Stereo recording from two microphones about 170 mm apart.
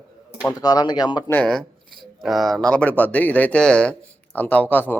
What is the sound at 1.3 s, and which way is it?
Speech, 5° left (ahead or behind).